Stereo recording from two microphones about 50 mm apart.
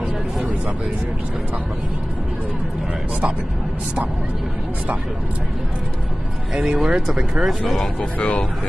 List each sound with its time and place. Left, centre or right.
6.5 s speech: centre
6.8 s speech: centre